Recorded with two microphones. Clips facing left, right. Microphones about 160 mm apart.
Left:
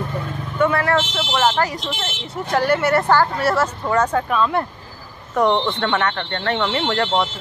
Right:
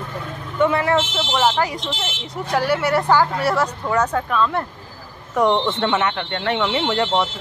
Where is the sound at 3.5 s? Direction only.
5° left (ahead or behind).